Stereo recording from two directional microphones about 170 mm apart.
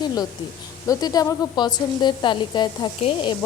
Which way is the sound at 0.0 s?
25° left (ahead or behind).